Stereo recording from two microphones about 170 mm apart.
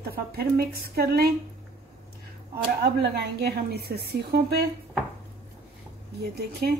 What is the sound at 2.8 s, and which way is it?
A woman's voice, 70° right (ahead or behind).